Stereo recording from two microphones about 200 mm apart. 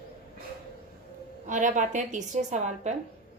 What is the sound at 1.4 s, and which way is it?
A woman's voice, 40° right (ahead or behind).